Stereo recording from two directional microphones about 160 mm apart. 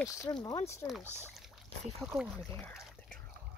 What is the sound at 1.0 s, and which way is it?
Speech, 15° right (ahead or behind).